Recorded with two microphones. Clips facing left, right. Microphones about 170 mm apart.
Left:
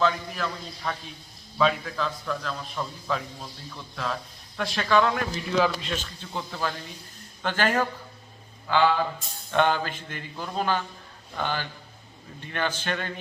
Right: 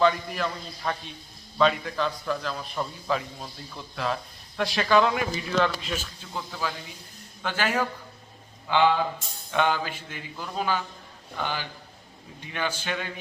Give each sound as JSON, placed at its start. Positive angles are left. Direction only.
{"t": 0.0, "sound": "speech", "side_deg": 0}
{"t": 1.5, "sound": "speech", "side_deg": 0}